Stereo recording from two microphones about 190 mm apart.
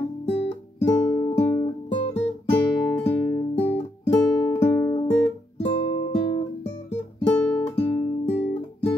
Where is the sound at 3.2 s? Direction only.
20° left (ahead or behind).